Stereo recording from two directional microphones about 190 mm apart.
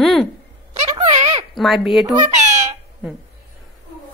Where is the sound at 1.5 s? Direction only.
Centre (ahead or behind).